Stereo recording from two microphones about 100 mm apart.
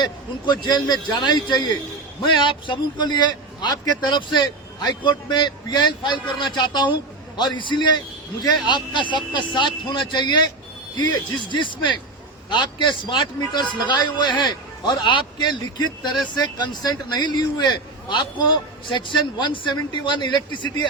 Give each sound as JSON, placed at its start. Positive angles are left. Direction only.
{"t": 0.0, "sound": "a man's voice", "side_deg": 50}